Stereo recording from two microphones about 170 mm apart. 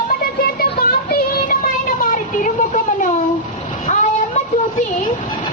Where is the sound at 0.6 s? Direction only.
60° left (ahead or behind).